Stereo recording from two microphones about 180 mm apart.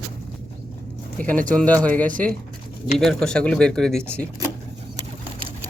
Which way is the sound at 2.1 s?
50° right (ahead or behind).